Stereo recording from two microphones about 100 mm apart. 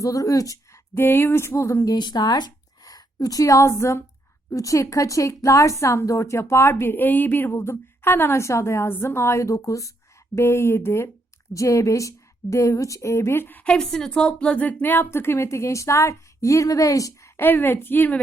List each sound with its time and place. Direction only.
0.0 s speech: 35° left (ahead or behind)
0.9 s speech: 20° left (ahead or behind)
13.7 s speech: 5° left (ahead or behind); by 17.4 s 35° left (ahead or behind)
17.4 s speech: 20° left (ahead or behind)